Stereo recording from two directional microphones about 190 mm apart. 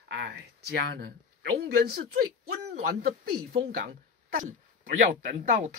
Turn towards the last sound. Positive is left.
turn(degrees=-40)  # may be behind; listen again after turning